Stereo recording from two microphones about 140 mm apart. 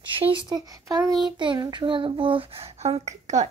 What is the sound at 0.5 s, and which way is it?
Speech, 25° right (ahead or behind).